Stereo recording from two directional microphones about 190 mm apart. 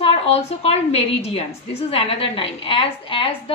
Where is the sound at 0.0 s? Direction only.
30° left (ahead or behind).